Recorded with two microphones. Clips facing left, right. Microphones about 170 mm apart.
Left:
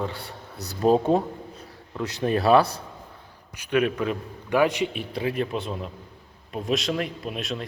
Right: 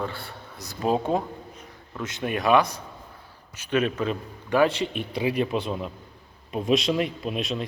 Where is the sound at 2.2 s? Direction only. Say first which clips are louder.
Left 2 dB; 35° left (ahead or behind).